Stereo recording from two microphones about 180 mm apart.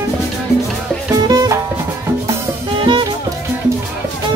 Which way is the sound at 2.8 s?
25° right (ahead or behind).